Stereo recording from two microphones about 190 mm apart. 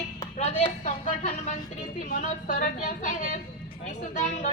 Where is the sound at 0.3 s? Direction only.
35° left (ahead or behind).